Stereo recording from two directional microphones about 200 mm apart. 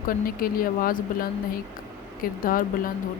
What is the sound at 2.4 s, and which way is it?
Speech, 45° left (ahead or behind).